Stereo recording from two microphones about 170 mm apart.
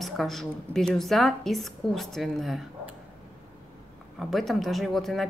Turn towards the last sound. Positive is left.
turn(degrees=0)  # may be behind; listen again after turning